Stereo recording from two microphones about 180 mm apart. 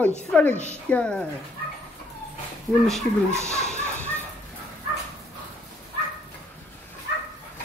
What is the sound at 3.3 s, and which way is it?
Speech, 15° right (ahead or behind).